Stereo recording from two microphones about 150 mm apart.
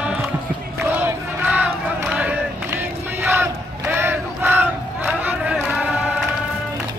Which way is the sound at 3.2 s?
15° right (ahead or behind).